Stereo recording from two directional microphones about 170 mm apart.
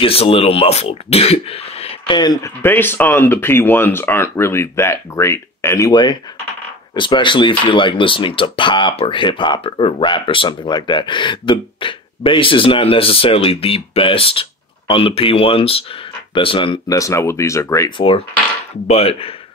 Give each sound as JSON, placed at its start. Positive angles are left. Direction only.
{"t": 0.0, "sound": "speech", "side_deg": 35}
{"t": 2.6, "sound": "speech", "side_deg": 10}
{"t": 17.9, "sound": "speech", "side_deg": 30}